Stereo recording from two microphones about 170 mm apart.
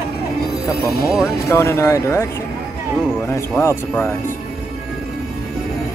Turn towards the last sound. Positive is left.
turn(degrees=15)  # may be behind; listen again after turning